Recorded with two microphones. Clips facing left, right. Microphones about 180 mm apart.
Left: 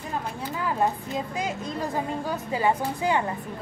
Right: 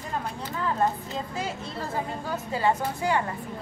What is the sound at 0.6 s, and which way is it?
A woman's voice, 15° left (ahead or behind).